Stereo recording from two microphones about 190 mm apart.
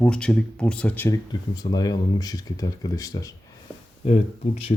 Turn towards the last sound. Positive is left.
turn(degrees=35)  # may be behind; listen again after turning